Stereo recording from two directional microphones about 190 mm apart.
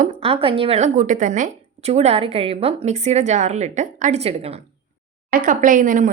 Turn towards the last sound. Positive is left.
turn(degrees=-45)  # may be behind; listen again after turning